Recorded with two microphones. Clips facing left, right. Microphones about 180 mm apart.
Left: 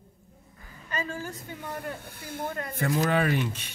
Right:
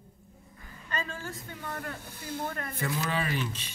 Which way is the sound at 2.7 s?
45° left (ahead or behind).